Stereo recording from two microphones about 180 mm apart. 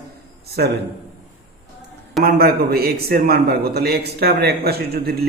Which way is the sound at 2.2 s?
60° right (ahead or behind).